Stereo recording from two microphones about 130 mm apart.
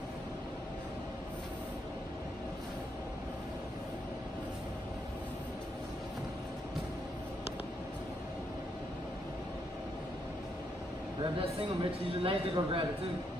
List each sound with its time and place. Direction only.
11.3 s a man's voice: 45° right (ahead or behind)